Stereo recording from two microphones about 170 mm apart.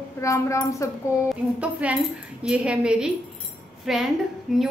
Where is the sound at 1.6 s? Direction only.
10° right (ahead or behind).